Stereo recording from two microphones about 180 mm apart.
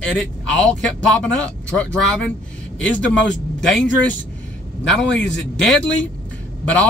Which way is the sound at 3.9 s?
90° left.